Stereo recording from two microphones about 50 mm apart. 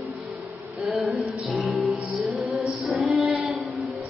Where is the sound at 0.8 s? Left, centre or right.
Centre.